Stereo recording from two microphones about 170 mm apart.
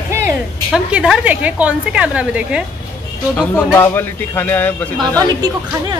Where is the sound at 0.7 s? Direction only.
5° right (ahead or behind).